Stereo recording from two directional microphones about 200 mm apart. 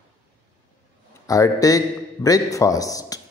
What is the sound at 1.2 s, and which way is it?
Speech, 15° left (ahead or behind).